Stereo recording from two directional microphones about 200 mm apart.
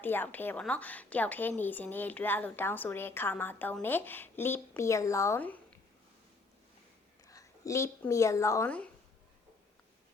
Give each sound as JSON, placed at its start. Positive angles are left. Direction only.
{"t": 0.0, "sound": "a woman's voice", "side_deg": 10}
{"t": 7.3, "sound": "a woman's voice", "side_deg": 15}